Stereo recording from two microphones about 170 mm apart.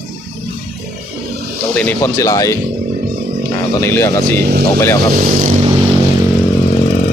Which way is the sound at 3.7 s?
15° left (ahead or behind).